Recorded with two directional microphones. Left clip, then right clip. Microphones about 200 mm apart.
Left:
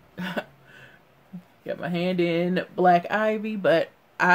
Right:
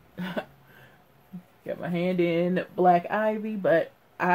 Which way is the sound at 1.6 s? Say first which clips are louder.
Left 1 dB; 10° left (ahead or behind).